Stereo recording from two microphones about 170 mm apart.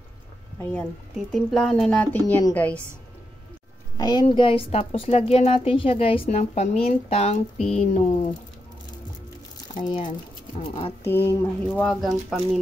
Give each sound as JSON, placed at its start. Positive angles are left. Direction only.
{"t": 0.6, "sound": "speech", "side_deg": 10}
{"t": 3.9, "sound": "a woman's voice", "side_deg": 25}
{"t": 9.8, "sound": "speech", "side_deg": 25}
{"t": 11.1, "sound": "speech", "side_deg": 10}
{"t": 11.8, "sound": "speech", "side_deg": 0}